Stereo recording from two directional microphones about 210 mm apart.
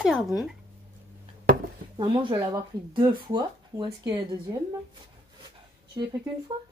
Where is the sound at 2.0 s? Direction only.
20° right (ahead or behind).